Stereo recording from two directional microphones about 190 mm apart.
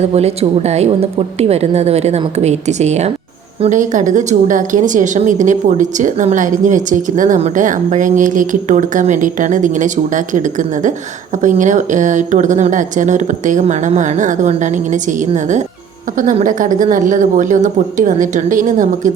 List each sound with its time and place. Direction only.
0.1 s speech: 35° right (ahead or behind)